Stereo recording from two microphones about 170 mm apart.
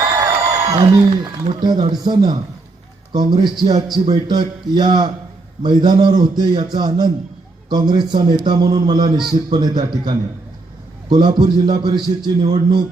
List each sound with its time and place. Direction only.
0.7 s a man's voice: 20° right (ahead or behind)